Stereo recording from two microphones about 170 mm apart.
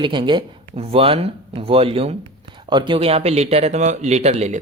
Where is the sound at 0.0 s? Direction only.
30° right (ahead or behind).